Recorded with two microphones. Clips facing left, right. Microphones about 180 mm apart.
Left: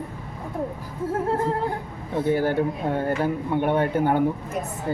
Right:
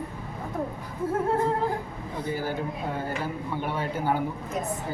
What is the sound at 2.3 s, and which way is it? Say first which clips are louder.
Speech: left 8 dB; 60° left (ahead or behind).